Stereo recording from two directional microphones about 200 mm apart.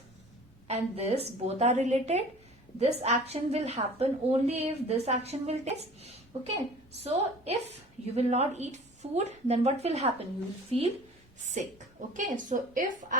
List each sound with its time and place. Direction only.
0.7 s a woman's voice: 30° right (ahead or behind)